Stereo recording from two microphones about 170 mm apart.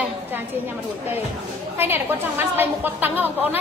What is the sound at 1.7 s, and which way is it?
A woman's voice, 10° right (ahead or behind).